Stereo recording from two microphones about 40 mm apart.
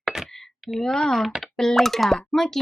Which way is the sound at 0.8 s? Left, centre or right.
Centre.